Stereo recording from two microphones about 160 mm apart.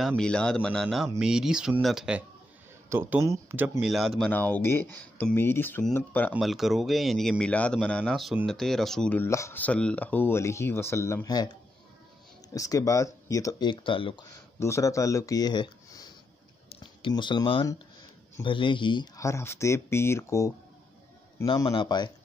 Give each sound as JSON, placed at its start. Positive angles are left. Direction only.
{"t": 0.0, "sound": "speech", "side_deg": 5}
{"t": 2.9, "sound": "speech", "side_deg": -15}
{"t": 3.9, "sound": "speech", "side_deg": 0}
{"t": 4.3, "sound": "speech", "side_deg": 10}
{"t": 6.3, "sound": "speech", "side_deg": 0}
{"t": 12.5, "sound": "speech", "side_deg": 20}
{"t": 14.6, "sound": "speech", "side_deg": 20}
{"t": 16.6, "sound": "a sound", "side_deg": 30}
{"t": 18.4, "sound": "speech", "side_deg": 30}
{"t": 21.5, "sound": "speech", "side_deg": 30}